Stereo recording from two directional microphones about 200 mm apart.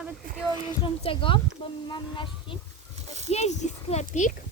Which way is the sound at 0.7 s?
25° left (ahead or behind).